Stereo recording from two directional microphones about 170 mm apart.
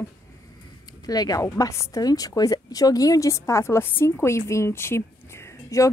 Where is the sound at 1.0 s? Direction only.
20° left (ahead or behind).